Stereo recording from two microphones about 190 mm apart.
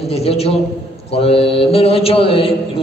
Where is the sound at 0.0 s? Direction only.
30° left (ahead or behind).